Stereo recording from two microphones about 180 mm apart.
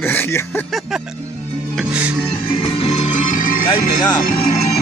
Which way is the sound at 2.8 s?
40° left (ahead or behind).